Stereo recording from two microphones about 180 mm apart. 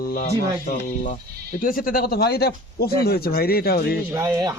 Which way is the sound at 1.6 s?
55° left (ahead or behind).